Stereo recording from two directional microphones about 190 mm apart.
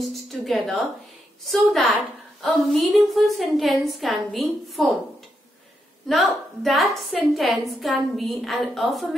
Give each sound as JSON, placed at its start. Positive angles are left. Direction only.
{"t": 0.3, "sound": "music", "side_deg": 0}
{"t": 1.5, "sound": "a woman's voice", "side_deg": 0}
{"t": 6.0, "sound": "a woman's voice", "side_deg": 0}